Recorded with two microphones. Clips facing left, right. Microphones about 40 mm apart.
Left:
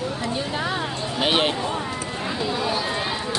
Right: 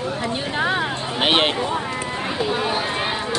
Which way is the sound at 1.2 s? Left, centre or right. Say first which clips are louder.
Right 3 dB; right.